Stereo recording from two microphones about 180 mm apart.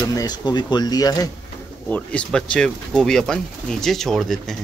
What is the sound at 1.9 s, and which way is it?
Speech, 5° left (ahead or behind).